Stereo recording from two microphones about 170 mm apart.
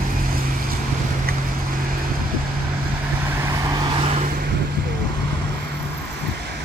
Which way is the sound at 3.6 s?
25° right (ahead or behind).